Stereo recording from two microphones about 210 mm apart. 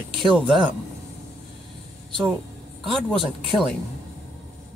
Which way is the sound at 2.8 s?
5° left (ahead or behind).